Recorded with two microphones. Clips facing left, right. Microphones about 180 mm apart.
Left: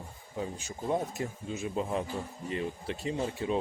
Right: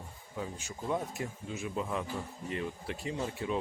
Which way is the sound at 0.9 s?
30° left (ahead or behind).